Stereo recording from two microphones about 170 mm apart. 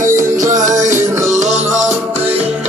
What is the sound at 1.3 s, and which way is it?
Music, 40° right (ahead or behind).